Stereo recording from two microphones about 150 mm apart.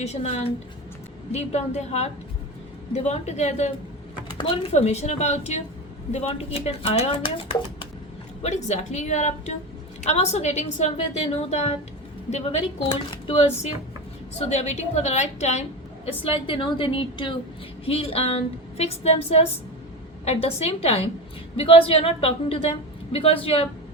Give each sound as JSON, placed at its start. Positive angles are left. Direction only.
{"t": 0.0, "sound": "a woman's voice", "side_deg": 45}
{"t": 4.4, "sound": "a woman's voice", "side_deg": 35}
{"t": 8.4, "sound": "a woman's voice", "side_deg": 50}
{"t": 13.1, "sound": "a woman's voice", "side_deg": 40}
{"t": 16.2, "sound": "a woman's voice", "side_deg": 35}